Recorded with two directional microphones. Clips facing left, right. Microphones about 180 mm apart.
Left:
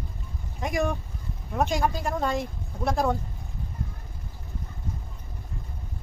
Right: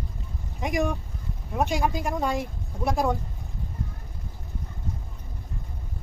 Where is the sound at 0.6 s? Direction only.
15° right (ahead or behind).